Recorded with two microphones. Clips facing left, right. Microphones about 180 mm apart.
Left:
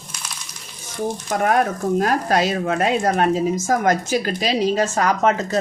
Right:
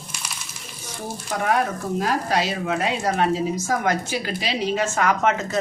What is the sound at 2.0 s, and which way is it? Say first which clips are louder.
A woman's voice: left 3 dB; 50° left (ahead or behind).